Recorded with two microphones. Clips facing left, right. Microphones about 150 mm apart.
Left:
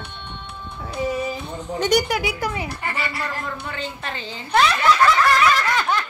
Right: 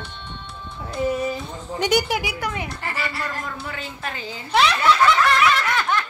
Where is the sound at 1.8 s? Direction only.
5° right (ahead or behind).